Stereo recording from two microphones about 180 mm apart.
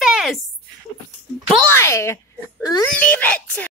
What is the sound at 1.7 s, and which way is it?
Speech, 15° left (ahead or behind).